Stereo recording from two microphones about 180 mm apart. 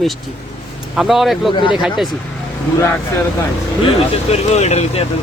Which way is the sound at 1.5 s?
25° left (ahead or behind).